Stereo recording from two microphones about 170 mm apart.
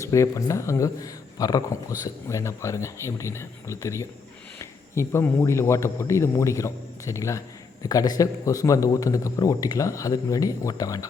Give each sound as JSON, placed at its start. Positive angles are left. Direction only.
{"t": 0.0, "sound": "a man's voice", "side_deg": 20}